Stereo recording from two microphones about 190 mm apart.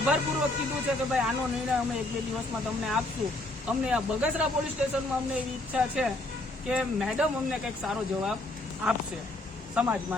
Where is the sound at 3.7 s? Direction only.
5° right (ahead or behind).